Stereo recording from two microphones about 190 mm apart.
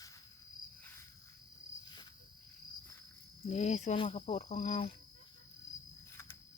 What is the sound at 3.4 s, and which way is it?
Speech, 40° left (ahead or behind).